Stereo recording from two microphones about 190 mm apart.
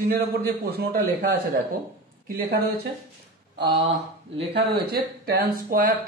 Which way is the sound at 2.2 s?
50° right (ahead or behind).